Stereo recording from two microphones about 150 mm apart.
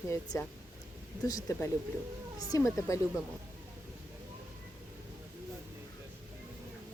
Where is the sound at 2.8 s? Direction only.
20° left (ahead or behind).